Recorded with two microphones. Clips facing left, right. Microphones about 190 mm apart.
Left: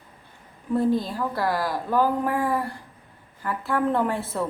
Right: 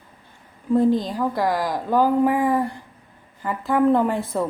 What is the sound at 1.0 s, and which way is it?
Speech, 15° right (ahead or behind).